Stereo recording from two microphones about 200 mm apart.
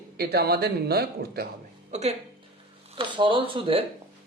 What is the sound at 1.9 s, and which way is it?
Speech, 35° right (ahead or behind).